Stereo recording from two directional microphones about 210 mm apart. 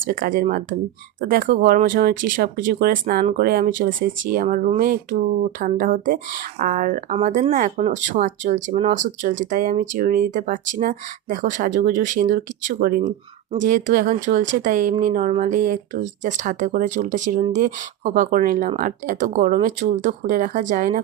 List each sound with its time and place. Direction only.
0.0 s speech: 40° right (ahead or behind)